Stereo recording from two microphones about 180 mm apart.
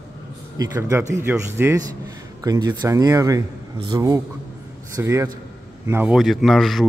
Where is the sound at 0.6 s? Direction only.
15° right (ahead or behind).